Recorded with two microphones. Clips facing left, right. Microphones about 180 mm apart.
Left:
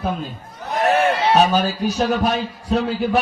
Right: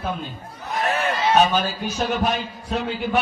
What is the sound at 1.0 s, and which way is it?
A man's voice, 35° left (ahead or behind).